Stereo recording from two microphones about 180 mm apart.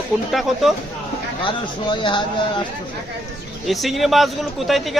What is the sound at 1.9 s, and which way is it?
Speech, 25° left (ahead or behind).